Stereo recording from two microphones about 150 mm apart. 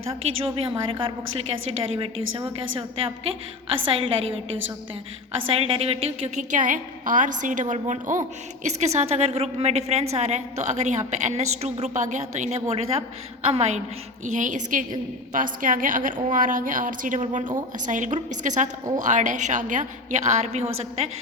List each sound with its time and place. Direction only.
0.1 s a woman's voice: 40° right (ahead or behind)
5.5 s a woman's voice: 40° right (ahead or behind)